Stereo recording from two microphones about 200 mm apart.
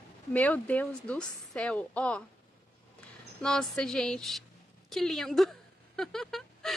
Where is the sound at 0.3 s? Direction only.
5° left (ahead or behind).